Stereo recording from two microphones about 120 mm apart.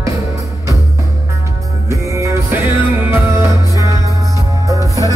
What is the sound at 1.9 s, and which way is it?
Music, 25° right (ahead or behind).